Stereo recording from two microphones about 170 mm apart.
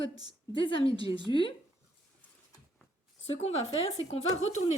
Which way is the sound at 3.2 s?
35° left (ahead or behind).